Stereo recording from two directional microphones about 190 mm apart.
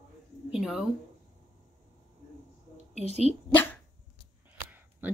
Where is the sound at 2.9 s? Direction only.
35° left (ahead or behind).